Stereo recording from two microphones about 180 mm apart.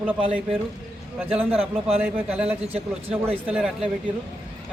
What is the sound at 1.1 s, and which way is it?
Speech, 10° right (ahead or behind).